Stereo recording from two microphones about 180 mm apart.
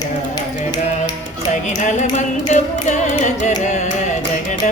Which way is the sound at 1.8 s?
40° left (ahead or behind).